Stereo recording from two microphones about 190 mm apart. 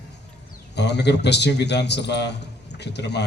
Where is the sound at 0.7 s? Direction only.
65° left (ahead or behind).